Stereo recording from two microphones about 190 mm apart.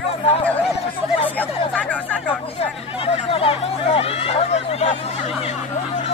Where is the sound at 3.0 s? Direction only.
30° left (ahead or behind).